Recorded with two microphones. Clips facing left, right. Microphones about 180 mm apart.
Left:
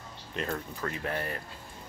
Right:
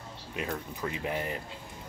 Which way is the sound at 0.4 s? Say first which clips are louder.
Left 1 dB; 10° right (ahead or behind).